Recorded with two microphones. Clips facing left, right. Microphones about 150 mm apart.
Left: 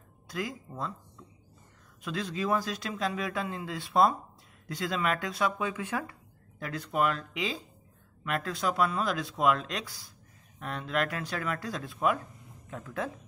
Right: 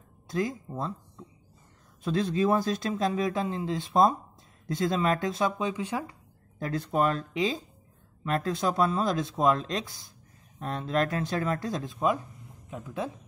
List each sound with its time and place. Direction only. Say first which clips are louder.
0.7 s speech: right 3 dB; 25° right (ahead or behind)
2.0 s speech: right 6 dB; 30° right (ahead or behind)
4.9 s speech: right 2 dB; 30° right (ahead or behind); by 6.1 s 15° right (ahead or behind)
6.6 s speech: right 3 dB; 30° right (ahead or behind)